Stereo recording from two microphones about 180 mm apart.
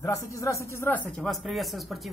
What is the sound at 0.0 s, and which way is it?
Speech, 15° left (ahead or behind).